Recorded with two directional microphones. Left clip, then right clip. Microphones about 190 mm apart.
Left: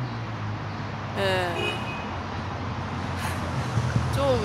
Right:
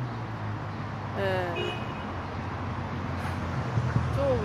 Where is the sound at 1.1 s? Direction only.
10° left (ahead or behind).